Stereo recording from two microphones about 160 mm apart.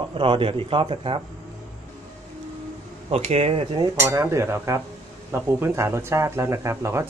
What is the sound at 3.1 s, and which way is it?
Speech, 40° right (ahead or behind).